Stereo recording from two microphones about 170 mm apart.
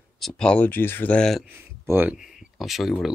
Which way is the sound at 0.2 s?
5° left (ahead or behind).